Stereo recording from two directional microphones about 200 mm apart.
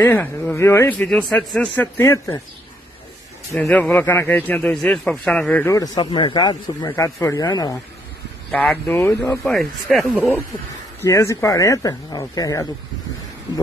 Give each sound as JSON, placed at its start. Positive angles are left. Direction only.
{"t": 0.0, "sound": "a man's voice", "side_deg": 10}
{"t": 3.5, "sound": "a man's voice", "side_deg": 5}
{"t": 8.5, "sound": "a man's voice", "side_deg": 5}
{"t": 9.4, "sound": "speech", "side_deg": 0}
{"t": 11.0, "sound": "a man's voice", "side_deg": 15}